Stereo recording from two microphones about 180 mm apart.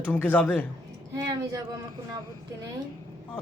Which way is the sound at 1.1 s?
20° right (ahead or behind).